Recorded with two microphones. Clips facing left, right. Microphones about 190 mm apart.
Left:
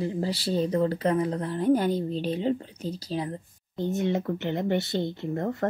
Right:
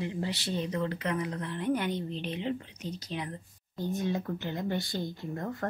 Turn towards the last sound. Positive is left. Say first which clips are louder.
# left 7 dB
turn(degrees=30)  # may be behind; listen again after turning